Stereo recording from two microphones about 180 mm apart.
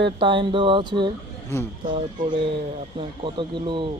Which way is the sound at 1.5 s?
15° left (ahead or behind).